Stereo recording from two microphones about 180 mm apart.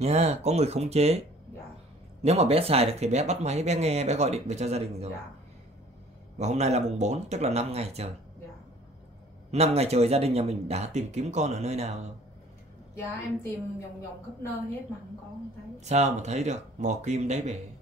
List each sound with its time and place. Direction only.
0.0 s speech: 35° right (ahead or behind)
2.2 s speech: 35° right (ahead or behind)
6.3 s speech: 40° right (ahead or behind)
9.5 s speech: 35° right (ahead or behind)
12.9 s a woman's voice: 15° left (ahead or behind)
15.8 s speech: 40° right (ahead or behind)